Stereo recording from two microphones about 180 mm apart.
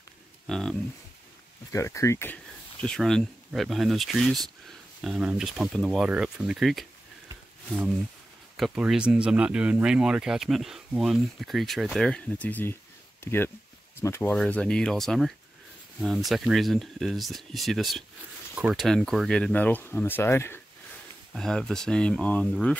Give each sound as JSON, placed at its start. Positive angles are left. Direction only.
{"t": 0.5, "sound": "speech", "side_deg": 5}
{"t": 1.7, "sound": "speech", "side_deg": 15}
{"t": 8.5, "sound": "speech", "side_deg": 0}